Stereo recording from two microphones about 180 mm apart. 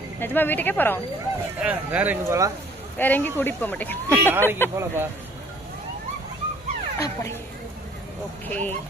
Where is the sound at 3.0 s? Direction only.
10° left (ahead or behind).